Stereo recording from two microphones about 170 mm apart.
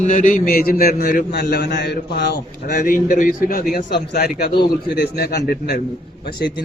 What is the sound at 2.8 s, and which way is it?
A man's voice, 55° left (ahead or behind).